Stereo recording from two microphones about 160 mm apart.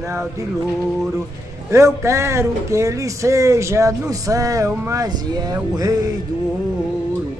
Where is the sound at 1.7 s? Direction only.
20° right (ahead or behind).